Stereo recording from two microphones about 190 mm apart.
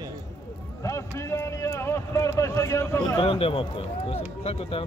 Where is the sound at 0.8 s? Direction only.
15° left (ahead or behind).